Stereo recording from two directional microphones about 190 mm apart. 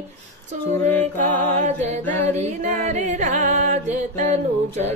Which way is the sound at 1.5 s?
35° right (ahead or behind).